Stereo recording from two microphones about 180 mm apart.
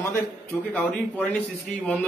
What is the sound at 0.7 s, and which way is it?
Speech, 10° left (ahead or behind).